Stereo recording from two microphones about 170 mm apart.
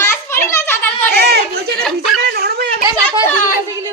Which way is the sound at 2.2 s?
65° right (ahead or behind).